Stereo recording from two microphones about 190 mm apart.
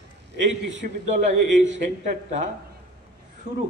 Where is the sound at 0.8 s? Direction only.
45° right (ahead or behind).